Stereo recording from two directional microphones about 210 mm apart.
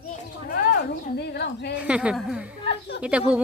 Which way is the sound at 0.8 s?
50° left (ahead or behind).